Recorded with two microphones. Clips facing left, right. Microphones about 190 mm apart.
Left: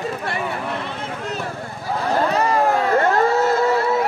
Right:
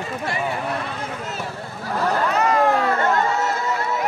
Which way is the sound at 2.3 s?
30° left (ahead or behind).